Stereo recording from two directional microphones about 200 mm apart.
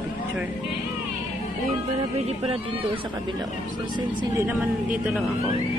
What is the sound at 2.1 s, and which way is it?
Speech, 30° right (ahead or behind).